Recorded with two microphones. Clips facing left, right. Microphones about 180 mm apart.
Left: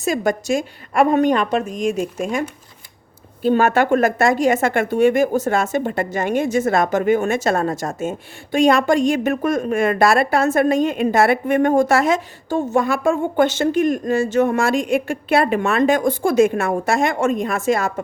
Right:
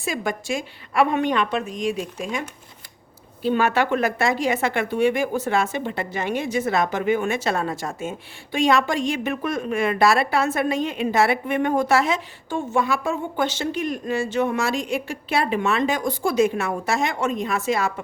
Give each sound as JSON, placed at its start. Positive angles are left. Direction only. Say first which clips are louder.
{"t": 0.0, "sound": "a woman's voice", "louder": "left 7 dB", "side_deg": 45}
{"t": 3.4, "sound": "a woman's voice", "louder": "left 5 dB", "side_deg": 45}